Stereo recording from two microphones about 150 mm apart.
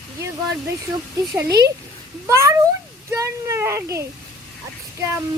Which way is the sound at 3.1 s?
20° right (ahead or behind).